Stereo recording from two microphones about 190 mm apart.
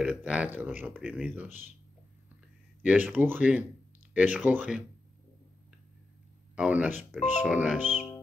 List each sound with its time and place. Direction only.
0.0 s speech: 10° right (ahead or behind)
2.8 s speech: 5° right (ahead or behind)
6.5 s speech: 5° right (ahead or behind)
7.8 s speech: 40° left (ahead or behind)